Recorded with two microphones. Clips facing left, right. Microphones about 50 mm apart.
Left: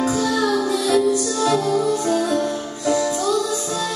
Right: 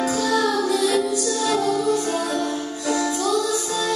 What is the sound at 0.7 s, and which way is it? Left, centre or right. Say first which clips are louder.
Music: even; left.